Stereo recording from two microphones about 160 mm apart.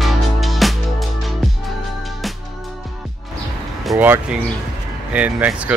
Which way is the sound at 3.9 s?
15° right (ahead or behind).